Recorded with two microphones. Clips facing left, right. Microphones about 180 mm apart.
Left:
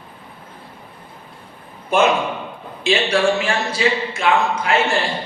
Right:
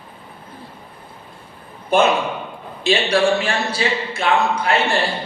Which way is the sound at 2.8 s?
35° right (ahead or behind).